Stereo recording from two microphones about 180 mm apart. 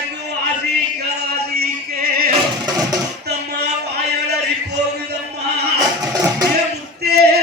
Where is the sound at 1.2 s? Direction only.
60° right (ahead or behind).